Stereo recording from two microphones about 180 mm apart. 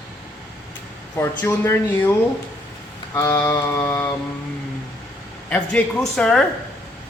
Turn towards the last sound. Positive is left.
turn(degrees=5)  # may be behind; listen again after turning